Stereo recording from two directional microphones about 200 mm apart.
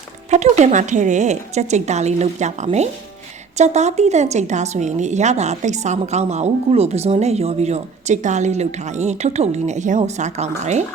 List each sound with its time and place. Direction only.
0.3 s speech: 35° right (ahead or behind)